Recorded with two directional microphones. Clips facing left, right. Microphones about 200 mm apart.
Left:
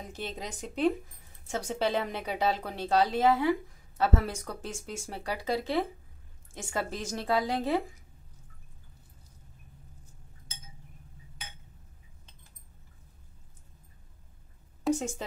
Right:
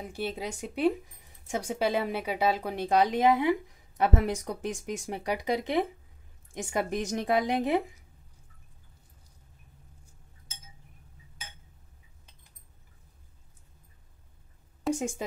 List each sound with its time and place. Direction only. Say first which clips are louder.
0.0 s a woman's voice: right 4 dB; 10° right (ahead or behind)
15.0 s speech: right 2 dB; 10° right (ahead or behind)